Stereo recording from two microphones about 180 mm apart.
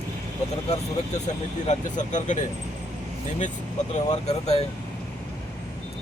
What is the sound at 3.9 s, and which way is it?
Speech, 35° left (ahead or behind).